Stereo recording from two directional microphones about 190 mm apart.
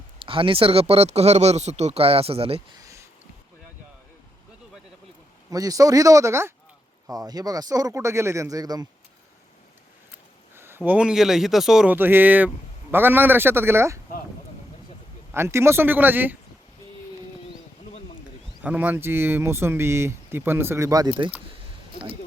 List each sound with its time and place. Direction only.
0.2 s speech: 30° right (ahead or behind)
2.7 s a sound: 15° right (ahead or behind)
5.5 s speech: 20° right (ahead or behind)
10.5 s speech: 10° right (ahead or behind)
15.3 s speech: 15° right (ahead or behind)
18.6 s speech: 10° right (ahead or behind)